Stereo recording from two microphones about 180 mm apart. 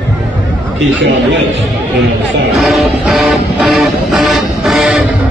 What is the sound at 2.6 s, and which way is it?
Music, centre (ahead or behind).